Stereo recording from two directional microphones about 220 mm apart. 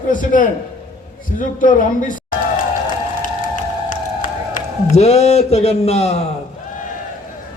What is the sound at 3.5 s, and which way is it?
Music, 35° left (ahead or behind).